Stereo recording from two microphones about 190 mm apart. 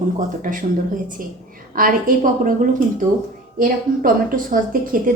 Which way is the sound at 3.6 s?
45° right (ahead or behind).